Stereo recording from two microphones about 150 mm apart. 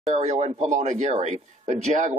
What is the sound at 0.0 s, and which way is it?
A man's voice, 50° right (ahead or behind).